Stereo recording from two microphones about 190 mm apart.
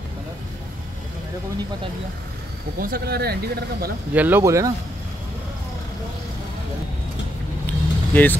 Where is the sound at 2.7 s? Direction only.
50° right (ahead or behind).